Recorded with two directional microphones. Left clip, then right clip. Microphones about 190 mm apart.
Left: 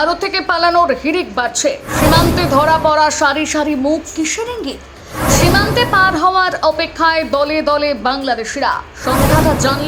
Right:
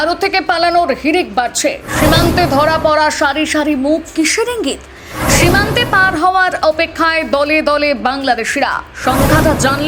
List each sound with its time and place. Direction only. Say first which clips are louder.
0.0 s a woman's voice: right 2 dB; 10° right (ahead or behind)
4.2 s a woman's voice: right 5 dB; 30° right (ahead or behind)
5.2 s a sound: right 1 dB; centre (ahead or behind)
5.7 s a woman's voice: even; 15° right (ahead or behind)
9.1 s a woman's voice: even; centre (ahead or behind)
9.6 s a woman's voice: right 2 dB; 15° right (ahead or behind)